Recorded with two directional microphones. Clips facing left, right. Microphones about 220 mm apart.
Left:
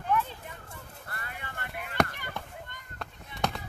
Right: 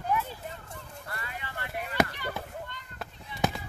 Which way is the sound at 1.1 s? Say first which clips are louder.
Right 2 dB; 50° left (ahead or behind).